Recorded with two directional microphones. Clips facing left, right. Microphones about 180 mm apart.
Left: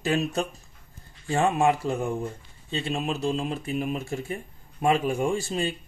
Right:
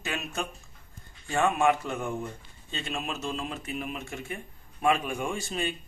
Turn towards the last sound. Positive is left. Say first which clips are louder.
# left 5 dB
turn(degrees=35)  # may be behind; listen again after turning